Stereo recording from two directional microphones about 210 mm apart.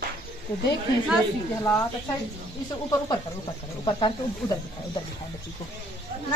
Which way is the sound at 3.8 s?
20° left (ahead or behind).